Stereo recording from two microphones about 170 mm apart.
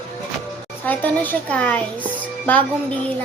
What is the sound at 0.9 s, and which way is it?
Speech, 10° left (ahead or behind).